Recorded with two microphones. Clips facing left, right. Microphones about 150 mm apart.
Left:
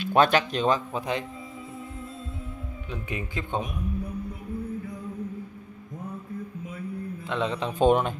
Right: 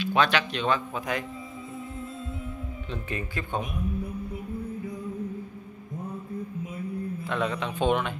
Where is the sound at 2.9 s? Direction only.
15° left (ahead or behind).